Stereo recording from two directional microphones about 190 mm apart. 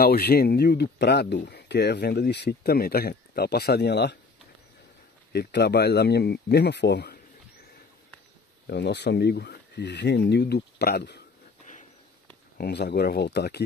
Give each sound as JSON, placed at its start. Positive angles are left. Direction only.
{"t": 0.0, "sound": "speech", "side_deg": 55}
{"t": 5.3, "sound": "speech", "side_deg": 60}
{"t": 8.6, "sound": "speech", "side_deg": 60}
{"t": 12.5, "sound": "speech", "side_deg": 60}